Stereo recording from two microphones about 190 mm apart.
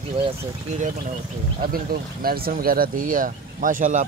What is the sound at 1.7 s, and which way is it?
Speech, 50° right (ahead or behind).